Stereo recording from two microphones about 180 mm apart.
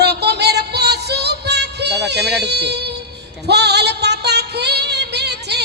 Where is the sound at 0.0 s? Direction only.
65° right (ahead or behind).